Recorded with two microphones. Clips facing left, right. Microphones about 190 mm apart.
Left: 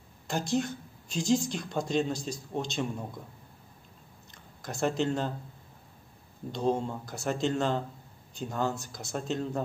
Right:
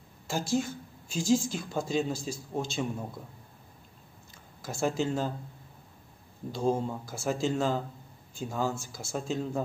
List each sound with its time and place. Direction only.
0.3 s speech: 5° right (ahead or behind)
4.6 s speech: 5° right (ahead or behind)
6.5 s speech: 5° right (ahead or behind)